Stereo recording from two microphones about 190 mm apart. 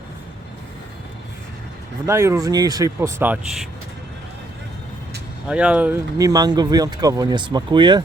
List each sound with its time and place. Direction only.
2.0 s speech: 15° right (ahead or behind)
5.5 s speech: 5° right (ahead or behind); by 8.0 s 25° right (ahead or behind)